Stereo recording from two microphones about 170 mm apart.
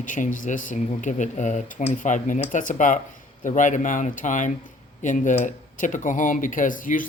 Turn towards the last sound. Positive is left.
turn(degrees=50)  # may be behind; listen again after turning